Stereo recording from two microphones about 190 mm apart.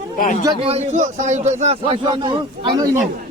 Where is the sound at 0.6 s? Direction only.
35° right (ahead or behind).